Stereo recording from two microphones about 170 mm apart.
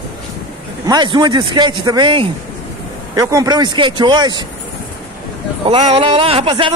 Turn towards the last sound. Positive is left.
turn(degrees=-30)  # may be behind; listen again after turning